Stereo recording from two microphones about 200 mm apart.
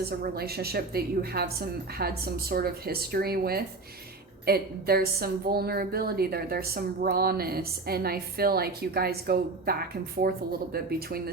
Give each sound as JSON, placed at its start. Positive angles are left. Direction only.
{"t": 0.0, "sound": "a woman's voice", "side_deg": -50}